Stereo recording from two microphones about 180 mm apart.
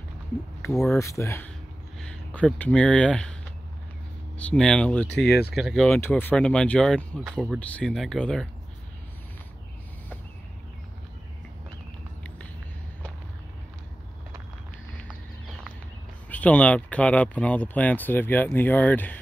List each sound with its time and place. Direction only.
0.7 s speech: centre (ahead or behind)
0.9 s speech: 15° left (ahead or behind)
4.4 s speech: 5° left (ahead or behind)
5.9 s speech: 10° left (ahead or behind)
16.3 s speech: 10° left (ahead or behind)